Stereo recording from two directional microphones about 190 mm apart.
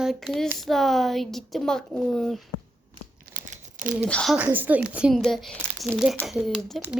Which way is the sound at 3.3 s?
45° right (ahead or behind).